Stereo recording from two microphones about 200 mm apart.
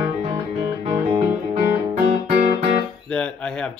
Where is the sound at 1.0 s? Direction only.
30° right (ahead or behind).